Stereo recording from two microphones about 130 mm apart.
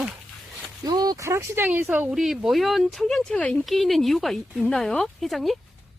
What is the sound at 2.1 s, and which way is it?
Speech, 5° right (ahead or behind).